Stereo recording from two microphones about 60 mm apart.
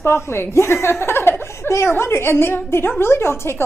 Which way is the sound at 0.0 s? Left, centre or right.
Left.